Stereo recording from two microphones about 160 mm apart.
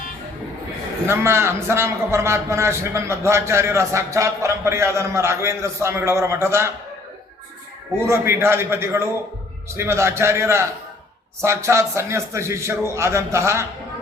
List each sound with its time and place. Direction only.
1.0 s a man's voice: 15° right (ahead or behind)
8.0 s a man's voice: 15° right (ahead or behind)